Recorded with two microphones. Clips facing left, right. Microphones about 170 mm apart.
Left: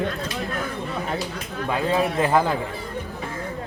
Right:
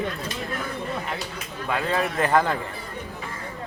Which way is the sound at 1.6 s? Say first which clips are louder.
Left 3 dB; 20° left (ahead or behind).